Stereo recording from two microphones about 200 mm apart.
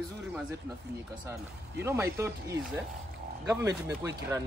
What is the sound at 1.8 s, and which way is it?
Speech, 10° right (ahead or behind).